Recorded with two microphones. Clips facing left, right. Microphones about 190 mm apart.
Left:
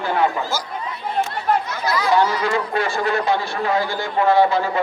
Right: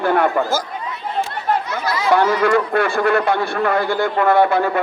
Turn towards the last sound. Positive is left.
turn(degrees=-60)  # may be behind; listen again after turning